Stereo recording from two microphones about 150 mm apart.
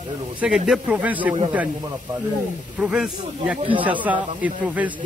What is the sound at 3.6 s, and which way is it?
Speech, 35° right (ahead or behind).